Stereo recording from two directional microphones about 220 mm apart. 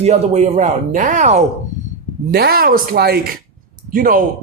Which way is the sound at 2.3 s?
45° right (ahead or behind).